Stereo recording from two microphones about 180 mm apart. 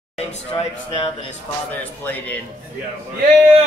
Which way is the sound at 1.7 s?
10° left (ahead or behind).